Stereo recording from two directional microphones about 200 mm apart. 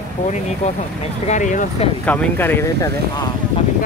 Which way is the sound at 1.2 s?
35° left (ahead or behind).